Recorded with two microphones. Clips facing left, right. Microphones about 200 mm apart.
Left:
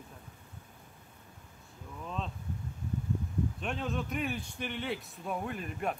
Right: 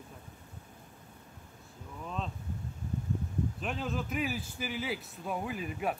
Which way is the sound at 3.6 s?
Centre (ahead or behind).